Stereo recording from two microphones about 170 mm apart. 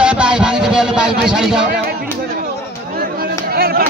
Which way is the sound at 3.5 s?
65° right (ahead or behind).